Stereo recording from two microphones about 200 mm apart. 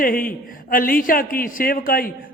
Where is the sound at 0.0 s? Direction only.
45° left (ahead or behind).